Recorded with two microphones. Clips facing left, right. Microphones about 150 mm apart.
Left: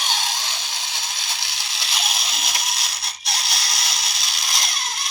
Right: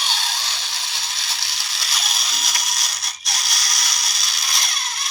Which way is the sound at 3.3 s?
30° left (ahead or behind).